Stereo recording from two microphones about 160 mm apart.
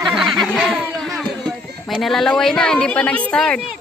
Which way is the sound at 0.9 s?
Centre (ahead or behind).